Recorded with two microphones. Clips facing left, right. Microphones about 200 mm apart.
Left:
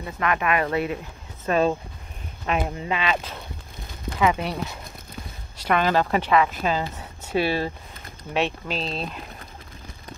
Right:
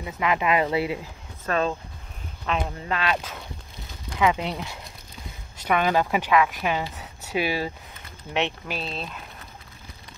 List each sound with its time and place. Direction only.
0.0 s speech: 15° right (ahead or behind)
1.4 s speech: 10° left (ahead or behind)
4.2 s speech: 15° right (ahead or behind)
5.7 s speech: 10° right (ahead or behind)
8.6 s speech: 5° right (ahead or behind)